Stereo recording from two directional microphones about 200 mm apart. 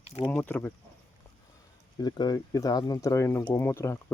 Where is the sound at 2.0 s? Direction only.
20° left (ahead or behind).